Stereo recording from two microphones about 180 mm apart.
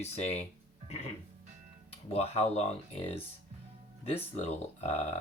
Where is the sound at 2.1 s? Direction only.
35° left (ahead or behind).